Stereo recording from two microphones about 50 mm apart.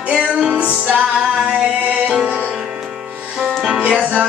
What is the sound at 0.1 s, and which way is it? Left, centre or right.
Music, centre.